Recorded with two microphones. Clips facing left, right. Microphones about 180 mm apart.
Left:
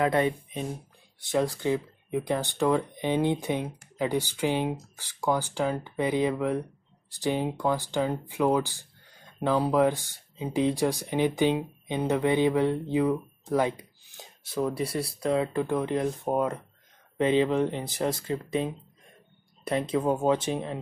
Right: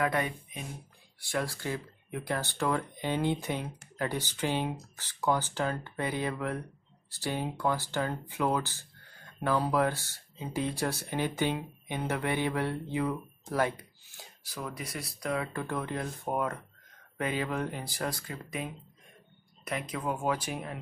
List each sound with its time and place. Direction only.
0.0 s speech: 25° left (ahead or behind)